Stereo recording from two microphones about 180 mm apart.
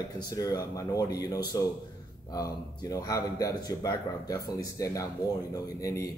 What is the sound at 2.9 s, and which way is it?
A man's voice, 20° left (ahead or behind).